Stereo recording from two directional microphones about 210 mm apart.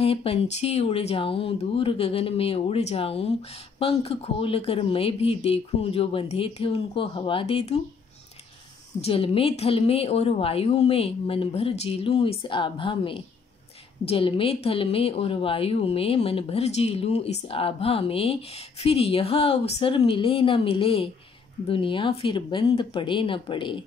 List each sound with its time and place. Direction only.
0.0 s a woman's voice: 30° left (ahead or behind)
9.0 s a woman's voice: 25° left (ahead or behind)